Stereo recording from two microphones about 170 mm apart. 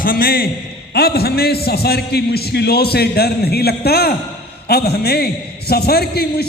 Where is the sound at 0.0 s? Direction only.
60° left (ahead or behind).